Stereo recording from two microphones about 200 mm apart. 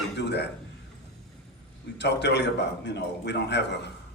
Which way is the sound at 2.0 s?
60° left (ahead or behind).